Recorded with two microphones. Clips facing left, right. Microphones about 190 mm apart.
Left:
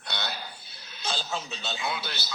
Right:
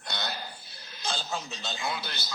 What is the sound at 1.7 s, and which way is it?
Speech, 5° left (ahead or behind).